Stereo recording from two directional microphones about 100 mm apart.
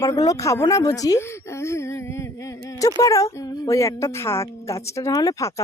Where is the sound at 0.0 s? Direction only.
35° left (ahead or behind).